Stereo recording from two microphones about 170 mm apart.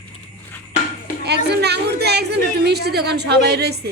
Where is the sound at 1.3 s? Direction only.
75° right (ahead or behind).